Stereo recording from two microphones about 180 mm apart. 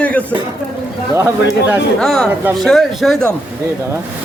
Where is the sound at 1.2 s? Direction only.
15° right (ahead or behind).